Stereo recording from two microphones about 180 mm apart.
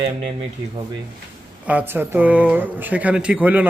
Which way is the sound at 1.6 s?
10° right (ahead or behind).